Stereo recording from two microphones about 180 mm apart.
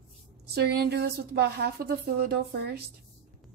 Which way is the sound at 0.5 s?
65° right (ahead or behind).